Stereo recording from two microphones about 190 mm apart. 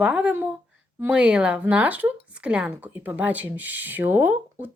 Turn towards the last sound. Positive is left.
turn(degrees=-10)  # may be behind; listen again after turning